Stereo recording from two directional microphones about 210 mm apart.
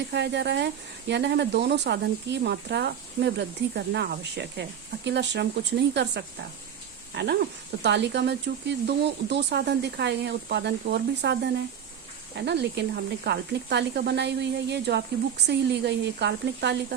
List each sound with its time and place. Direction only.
0.1 s speech: 55° right (ahead or behind)